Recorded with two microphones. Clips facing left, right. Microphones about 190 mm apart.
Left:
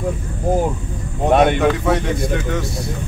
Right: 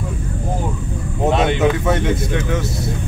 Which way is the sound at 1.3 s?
55° left (ahead or behind).